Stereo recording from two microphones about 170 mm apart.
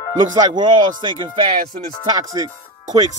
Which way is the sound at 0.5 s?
25° right (ahead or behind).